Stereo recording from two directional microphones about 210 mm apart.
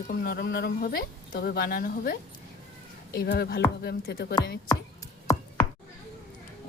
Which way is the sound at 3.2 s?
50° left (ahead or behind).